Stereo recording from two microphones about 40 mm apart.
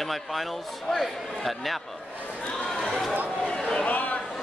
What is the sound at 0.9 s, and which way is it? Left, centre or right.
Speech, centre.